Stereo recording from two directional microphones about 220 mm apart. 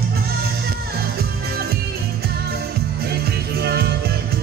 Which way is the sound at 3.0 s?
45° right (ahead or behind).